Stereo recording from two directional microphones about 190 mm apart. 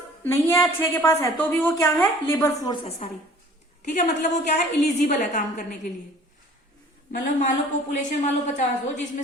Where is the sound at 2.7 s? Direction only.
30° left (ahead or behind).